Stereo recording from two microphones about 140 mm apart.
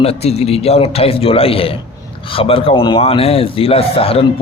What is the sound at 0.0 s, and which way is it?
A man's voice, 45° left (ahead or behind).